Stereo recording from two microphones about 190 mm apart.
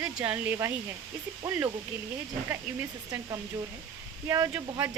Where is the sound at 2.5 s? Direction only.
15° right (ahead or behind).